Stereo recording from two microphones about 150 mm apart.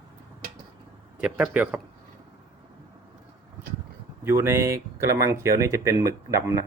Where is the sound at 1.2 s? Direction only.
10° right (ahead or behind).